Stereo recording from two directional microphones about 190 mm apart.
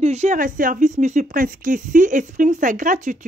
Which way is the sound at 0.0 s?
35° right (ahead or behind).